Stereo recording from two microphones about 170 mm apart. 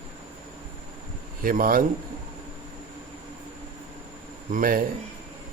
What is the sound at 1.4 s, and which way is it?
Speech, 55° right (ahead or behind).